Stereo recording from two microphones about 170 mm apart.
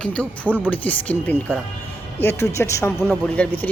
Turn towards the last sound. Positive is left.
turn(degrees=5)  # may be behind; listen again after turning